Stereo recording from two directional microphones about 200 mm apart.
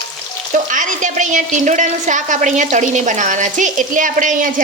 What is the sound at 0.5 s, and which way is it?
A woman's voice, 40° right (ahead or behind).